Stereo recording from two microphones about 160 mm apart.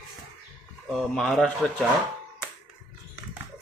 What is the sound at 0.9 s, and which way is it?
Speech, 5° left (ahead or behind).